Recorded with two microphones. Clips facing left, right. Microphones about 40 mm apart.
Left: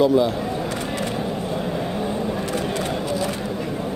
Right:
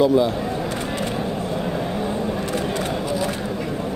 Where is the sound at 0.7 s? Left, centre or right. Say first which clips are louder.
Even; right.